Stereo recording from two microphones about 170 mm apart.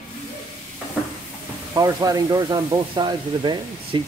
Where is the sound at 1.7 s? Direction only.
20° right (ahead or behind).